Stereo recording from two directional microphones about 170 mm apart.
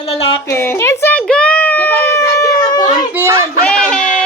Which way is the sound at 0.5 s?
15° left (ahead or behind).